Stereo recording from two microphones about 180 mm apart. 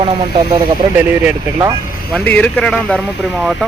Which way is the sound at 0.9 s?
5° right (ahead or behind).